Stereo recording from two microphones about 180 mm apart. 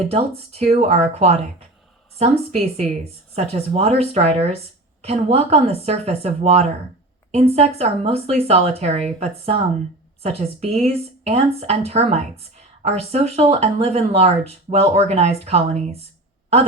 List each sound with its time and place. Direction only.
0.1 s speech: 35° right (ahead or behind)
10.2 s speech: 35° right (ahead or behind)